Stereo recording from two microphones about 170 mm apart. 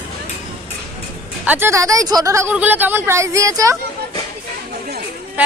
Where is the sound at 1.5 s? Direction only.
15° right (ahead or behind).